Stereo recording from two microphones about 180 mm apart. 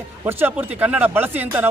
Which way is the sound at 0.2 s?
10° right (ahead or behind).